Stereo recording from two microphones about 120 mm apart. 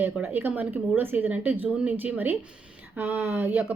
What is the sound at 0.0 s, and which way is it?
Speech, 15° right (ahead or behind).